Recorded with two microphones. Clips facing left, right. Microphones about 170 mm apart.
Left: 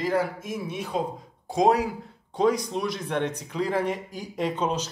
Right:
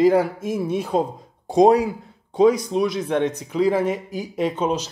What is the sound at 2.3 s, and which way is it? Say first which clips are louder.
Speech: right 7 dB; 10° right (ahead or behind).